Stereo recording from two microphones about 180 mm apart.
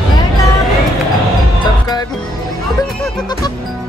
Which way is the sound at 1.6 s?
20° left (ahead or behind).